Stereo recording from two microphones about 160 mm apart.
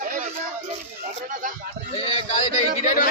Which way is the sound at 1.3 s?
55° right (ahead or behind).